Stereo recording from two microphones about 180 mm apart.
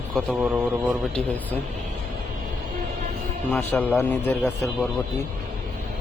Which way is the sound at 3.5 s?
10° left (ahead or behind).